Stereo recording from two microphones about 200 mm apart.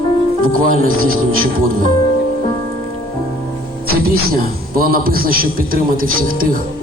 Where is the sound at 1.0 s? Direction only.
90° right.